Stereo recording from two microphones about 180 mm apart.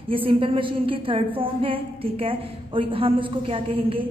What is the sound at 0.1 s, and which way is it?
A woman's voice, 30° right (ahead or behind).